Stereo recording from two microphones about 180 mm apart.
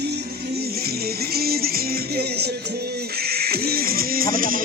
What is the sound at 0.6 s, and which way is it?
Music, 60° right (ahead or behind).